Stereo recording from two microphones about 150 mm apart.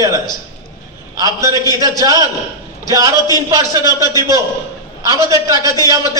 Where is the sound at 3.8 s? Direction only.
25° left (ahead or behind).